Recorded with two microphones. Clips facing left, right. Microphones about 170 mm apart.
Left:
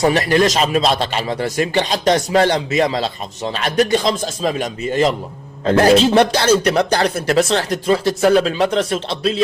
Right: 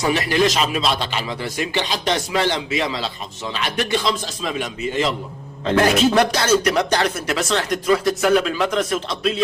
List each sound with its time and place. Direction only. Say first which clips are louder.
0.0 s a man's voice: left 4 dB; 40° left (ahead or behind)